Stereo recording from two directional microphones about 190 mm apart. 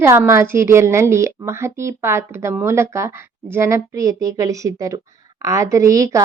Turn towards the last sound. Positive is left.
turn(degrees=-15)  # may be behind; listen again after turning